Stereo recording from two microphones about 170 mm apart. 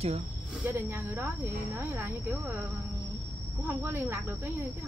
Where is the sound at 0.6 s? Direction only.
15° right (ahead or behind).